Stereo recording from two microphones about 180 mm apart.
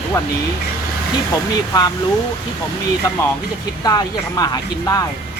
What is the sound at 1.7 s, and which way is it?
Speech, 20° left (ahead or behind).